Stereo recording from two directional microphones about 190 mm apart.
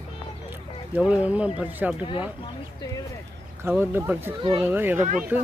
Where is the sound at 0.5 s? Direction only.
10° right (ahead or behind).